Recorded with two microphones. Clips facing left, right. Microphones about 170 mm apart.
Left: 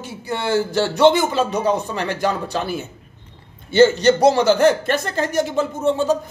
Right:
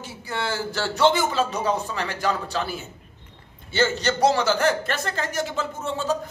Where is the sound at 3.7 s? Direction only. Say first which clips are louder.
Left 10 dB; 20° left (ahead or behind).